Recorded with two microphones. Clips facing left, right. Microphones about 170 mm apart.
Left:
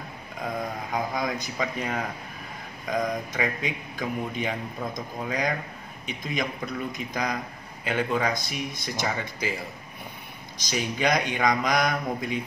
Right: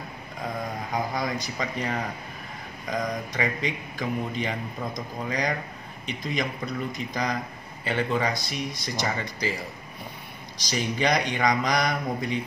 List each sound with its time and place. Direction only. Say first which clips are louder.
0.9 s speech: even; centre (ahead or behind)
7.8 s speech: even; 5° left (ahead or behind)
8.4 s speech: right 1 dB; 50° left (ahead or behind)
8.8 s speech: left 1 dB; centre (ahead or behind)
10.6 s speech: even; centre (ahead or behind)